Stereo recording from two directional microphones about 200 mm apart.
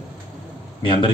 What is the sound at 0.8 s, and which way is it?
Speech, 25° left (ahead or behind).